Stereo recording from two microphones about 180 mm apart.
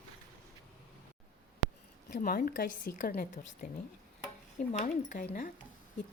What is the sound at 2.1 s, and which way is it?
A woman's voice, 55° left (ahead or behind).